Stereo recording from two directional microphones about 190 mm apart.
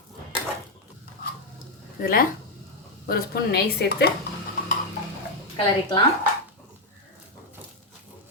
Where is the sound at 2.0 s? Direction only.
50° left (ahead or behind).